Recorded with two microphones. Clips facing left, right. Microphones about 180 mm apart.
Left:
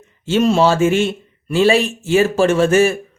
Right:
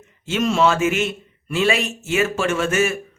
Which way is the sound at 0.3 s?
35° left (ahead or behind).